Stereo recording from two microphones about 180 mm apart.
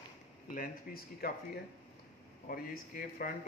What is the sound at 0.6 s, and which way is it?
Speech, 55° left (ahead or behind).